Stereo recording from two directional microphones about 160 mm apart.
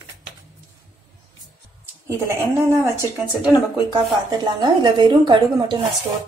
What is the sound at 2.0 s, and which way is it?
Speech, 20° right (ahead or behind).